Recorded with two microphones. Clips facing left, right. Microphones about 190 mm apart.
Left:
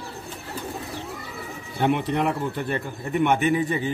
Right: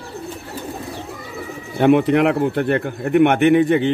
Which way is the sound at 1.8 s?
70° right (ahead or behind).